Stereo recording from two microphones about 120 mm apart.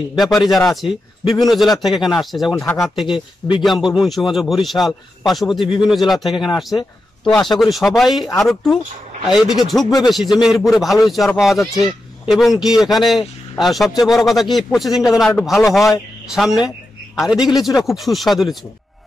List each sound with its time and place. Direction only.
0.7 s a man's voice: centre (ahead or behind)
3.1 s speech: 45° left (ahead or behind)
3.6 s a man's voice: centre (ahead or behind)